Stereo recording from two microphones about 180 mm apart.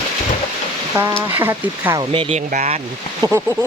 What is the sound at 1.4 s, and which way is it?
Speech, 15° right (ahead or behind).